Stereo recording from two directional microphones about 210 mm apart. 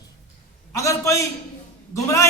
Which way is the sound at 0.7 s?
15° left (ahead or behind).